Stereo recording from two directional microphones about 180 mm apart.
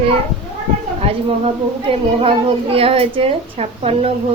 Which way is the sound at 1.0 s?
30° right (ahead or behind).